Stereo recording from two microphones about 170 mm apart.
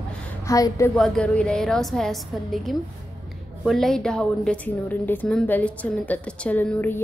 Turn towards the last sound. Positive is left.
turn(degrees=10)  # may be behind; listen again after turning